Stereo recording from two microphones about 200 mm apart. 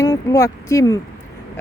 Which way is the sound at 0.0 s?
15° left (ahead or behind).